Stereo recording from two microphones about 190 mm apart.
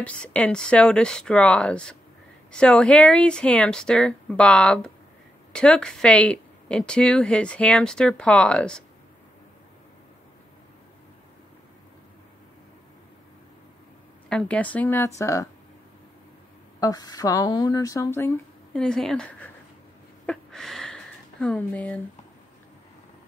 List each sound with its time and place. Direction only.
0.0 s speech: 5° left (ahead or behind)
14.3 s speech: 5° left (ahead or behind)
16.8 s speech: 20° left (ahead or behind)
20.2 s a sound: centre (ahead or behind)